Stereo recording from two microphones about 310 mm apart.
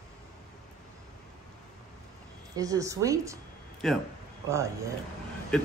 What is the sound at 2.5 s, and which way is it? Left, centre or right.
Speech, centre.